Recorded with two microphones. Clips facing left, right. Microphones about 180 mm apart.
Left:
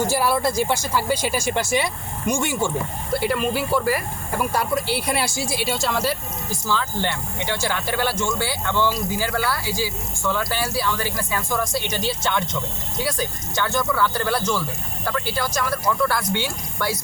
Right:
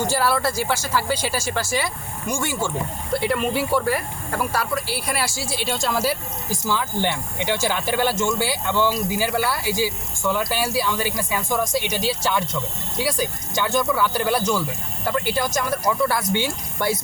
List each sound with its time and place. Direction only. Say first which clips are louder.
0.0 s speech: left 1 dB; 10° left (ahead or behind)
3.1 s speech: even; 5° left (ahead or behind)
4.5 s a woman's voice: left 2 dB; 20° left (ahead or behind); by 17.0 s 20° right (ahead or behind)